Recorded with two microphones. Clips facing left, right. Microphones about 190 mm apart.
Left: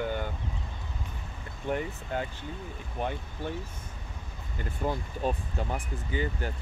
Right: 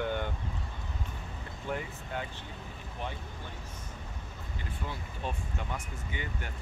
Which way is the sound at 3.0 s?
50° left (ahead or behind).